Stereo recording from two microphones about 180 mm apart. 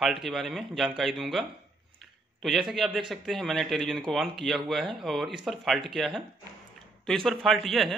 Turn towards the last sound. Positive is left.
turn(degrees=0)  # may be behind; listen again after turning